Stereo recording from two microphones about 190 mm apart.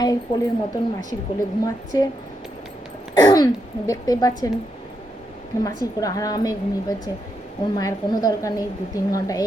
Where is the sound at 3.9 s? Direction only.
20° left (ahead or behind).